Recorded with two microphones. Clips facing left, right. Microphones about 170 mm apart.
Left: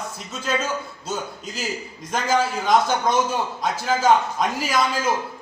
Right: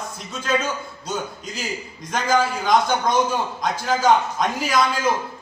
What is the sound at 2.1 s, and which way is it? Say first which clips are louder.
A man's voice: right 1 dB; 5° left (ahead or behind).